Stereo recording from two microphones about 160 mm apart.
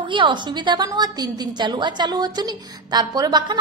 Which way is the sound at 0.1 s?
30° right (ahead or behind).